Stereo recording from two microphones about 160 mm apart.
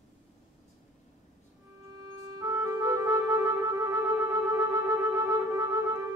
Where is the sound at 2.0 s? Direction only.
25° right (ahead or behind).